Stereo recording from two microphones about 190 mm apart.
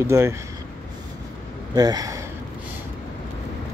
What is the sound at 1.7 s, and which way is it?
Speech, 20° right (ahead or behind).